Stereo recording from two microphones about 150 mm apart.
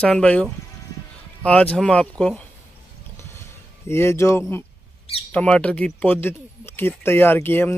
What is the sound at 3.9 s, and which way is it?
Speech, 15° left (ahead or behind).